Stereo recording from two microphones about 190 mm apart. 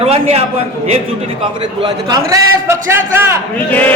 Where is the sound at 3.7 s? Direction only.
10° left (ahead or behind).